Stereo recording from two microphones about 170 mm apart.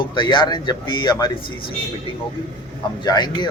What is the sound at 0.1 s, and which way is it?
Speech, 30° left (ahead or behind).